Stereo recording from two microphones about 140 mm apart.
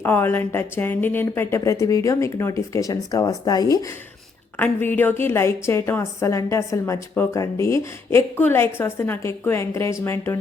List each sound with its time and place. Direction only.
0.0 s a woman's voice: 15° left (ahead or behind)
4.5 s a woman's voice: 10° left (ahead or behind)